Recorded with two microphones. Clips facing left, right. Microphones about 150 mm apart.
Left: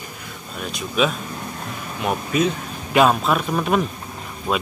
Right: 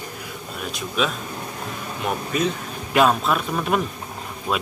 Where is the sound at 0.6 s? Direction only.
Centre (ahead or behind).